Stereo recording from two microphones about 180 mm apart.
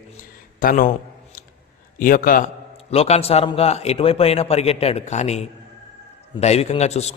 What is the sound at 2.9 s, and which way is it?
A man's voice, 35° left (ahead or behind).